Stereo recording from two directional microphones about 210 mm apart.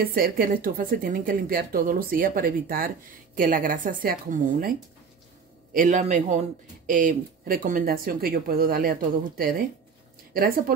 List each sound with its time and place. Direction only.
0.0 s a woman's voice: 45° right (ahead or behind)